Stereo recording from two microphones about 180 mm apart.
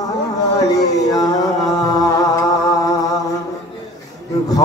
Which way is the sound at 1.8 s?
20° left (ahead or behind).